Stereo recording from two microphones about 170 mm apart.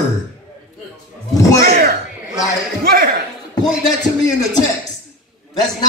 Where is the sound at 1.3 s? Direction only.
20° left (ahead or behind).